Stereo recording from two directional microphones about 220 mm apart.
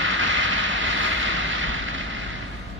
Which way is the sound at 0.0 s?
60° right (ahead or behind).